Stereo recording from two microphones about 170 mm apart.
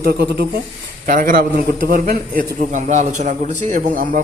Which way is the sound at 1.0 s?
55° right (ahead or behind).